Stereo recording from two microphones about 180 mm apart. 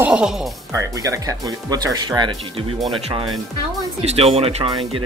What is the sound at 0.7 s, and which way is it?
Speech, 20° right (ahead or behind).